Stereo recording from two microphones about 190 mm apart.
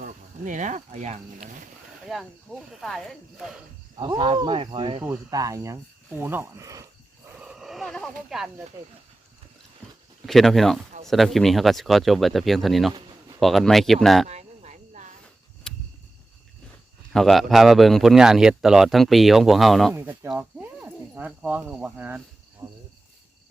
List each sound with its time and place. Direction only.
0.0 s speech: 40° right (ahead or behind)
2.0 s speech: centre (ahead or behind)
4.2 s speech: 25° right (ahead or behind)
7.3 s a sound: 5° right (ahead or behind)
8.3 s speech: 5° right (ahead or behind)
10.2 s speech: centre (ahead or behind)
12.9 s a sound: 25° right (ahead or behind)
13.4 s speech: centre (ahead or behind)
14.3 s frog: 35° right (ahead or behind)
15.7 s a sound: 5° left (ahead or behind)
17.1 s speech: centre (ahead or behind)
20.0 s speech: 10° right (ahead or behind)